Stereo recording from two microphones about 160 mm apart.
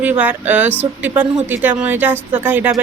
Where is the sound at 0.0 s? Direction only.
10° right (ahead or behind).